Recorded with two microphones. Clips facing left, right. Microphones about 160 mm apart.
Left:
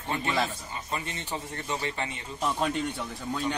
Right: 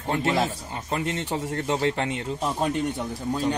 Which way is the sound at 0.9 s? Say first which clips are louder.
Right 8 dB; 80° right.